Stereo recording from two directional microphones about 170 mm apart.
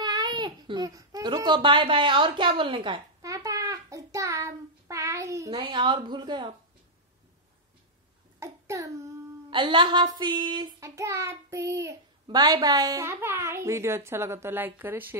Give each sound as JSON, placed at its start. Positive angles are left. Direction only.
{"t": 0.0, "sound": "baby cry", "side_deg": -25}
{"t": 5.5, "sound": "a woman's voice", "side_deg": -30}
{"t": 8.4, "sound": "a sound", "side_deg": -20}
{"t": 9.5, "sound": "child singing", "side_deg": -30}